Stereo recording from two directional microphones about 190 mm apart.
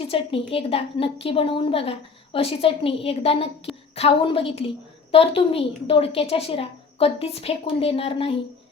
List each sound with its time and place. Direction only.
0.1 s a woman's voice: 30° left (ahead or behind)